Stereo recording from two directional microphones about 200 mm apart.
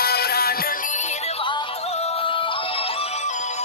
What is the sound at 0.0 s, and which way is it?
Music, 50° left (ahead or behind).